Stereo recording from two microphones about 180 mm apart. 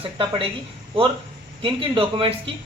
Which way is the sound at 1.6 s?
30° right (ahead or behind).